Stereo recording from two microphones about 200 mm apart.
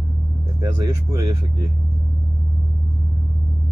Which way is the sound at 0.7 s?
20° right (ahead or behind).